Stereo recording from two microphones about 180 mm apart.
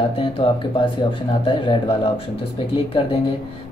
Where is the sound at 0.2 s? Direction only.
30° left (ahead or behind).